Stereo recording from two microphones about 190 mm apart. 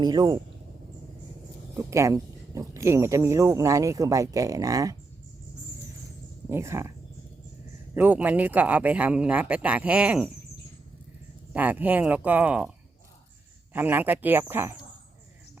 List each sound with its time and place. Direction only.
0.0 s speech: 20° right (ahead or behind)
1.7 s speech: 15° right (ahead or behind)
6.5 s speech: 15° right (ahead or behind)
7.9 s speech: 10° right (ahead or behind)
11.5 s speech: 10° right (ahead or behind)
13.7 s speech: 10° right (ahead or behind)